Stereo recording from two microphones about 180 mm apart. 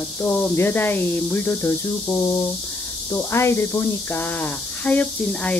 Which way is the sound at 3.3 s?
15° left (ahead or behind).